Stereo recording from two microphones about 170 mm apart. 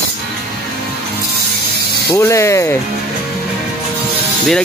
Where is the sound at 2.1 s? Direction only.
15° left (ahead or behind).